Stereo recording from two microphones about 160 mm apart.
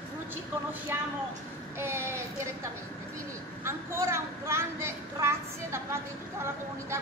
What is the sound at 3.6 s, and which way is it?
A woman's voice, 15° right (ahead or behind).